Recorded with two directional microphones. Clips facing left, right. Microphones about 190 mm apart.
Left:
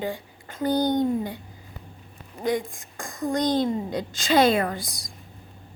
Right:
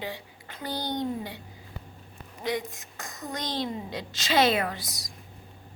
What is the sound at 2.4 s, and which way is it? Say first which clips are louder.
A child's voice: left 5 dB; 50° left (ahead or behind).